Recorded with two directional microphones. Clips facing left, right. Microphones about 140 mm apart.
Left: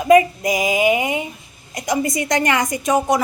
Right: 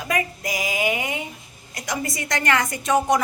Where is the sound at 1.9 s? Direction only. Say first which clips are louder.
Left 7 dB; 15° left (ahead or behind).